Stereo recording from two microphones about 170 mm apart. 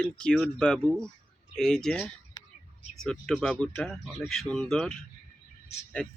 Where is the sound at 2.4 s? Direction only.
20° left (ahead or behind).